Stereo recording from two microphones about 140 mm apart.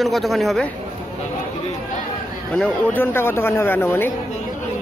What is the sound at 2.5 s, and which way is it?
Speech, 10° left (ahead or behind).